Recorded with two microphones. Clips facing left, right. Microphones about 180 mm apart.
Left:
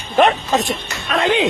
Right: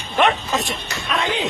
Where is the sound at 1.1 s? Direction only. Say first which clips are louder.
Left 7 dB; 60° left (ahead or behind).